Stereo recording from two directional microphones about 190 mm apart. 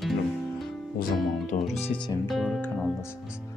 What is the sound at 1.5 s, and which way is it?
Speech, 40° left (ahead or behind).